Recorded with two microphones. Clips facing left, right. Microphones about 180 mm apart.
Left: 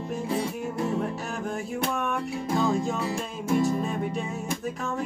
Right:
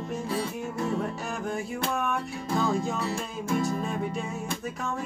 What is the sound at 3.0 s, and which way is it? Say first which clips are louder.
Music: left 1 dB; 20° left (ahead or behind).